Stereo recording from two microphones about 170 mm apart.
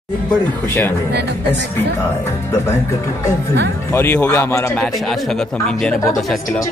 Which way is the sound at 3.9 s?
15° left (ahead or behind).